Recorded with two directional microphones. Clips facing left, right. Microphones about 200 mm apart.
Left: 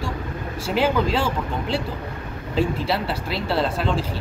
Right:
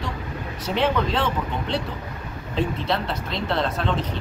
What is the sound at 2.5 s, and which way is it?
Speech, 5° left (ahead or behind).